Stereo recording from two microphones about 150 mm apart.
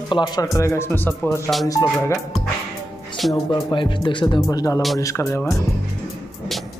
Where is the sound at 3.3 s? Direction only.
30° left (ahead or behind).